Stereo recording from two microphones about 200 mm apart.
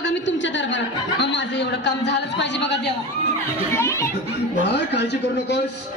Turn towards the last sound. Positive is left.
turn(degrees=60)  # may be behind; listen again after turning